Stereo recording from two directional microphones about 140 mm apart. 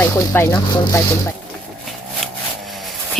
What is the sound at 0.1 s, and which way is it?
Speech, 15° left (ahead or behind).